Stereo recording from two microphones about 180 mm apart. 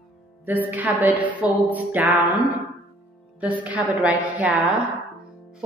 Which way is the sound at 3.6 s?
5° right (ahead or behind).